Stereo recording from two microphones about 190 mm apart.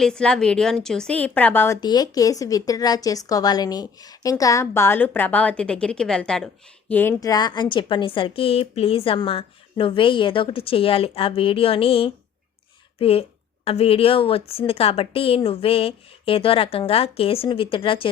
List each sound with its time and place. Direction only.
0.0 s a woman's voice: 5° left (ahead or behind); by 18.1 s 30° left (ahead or behind)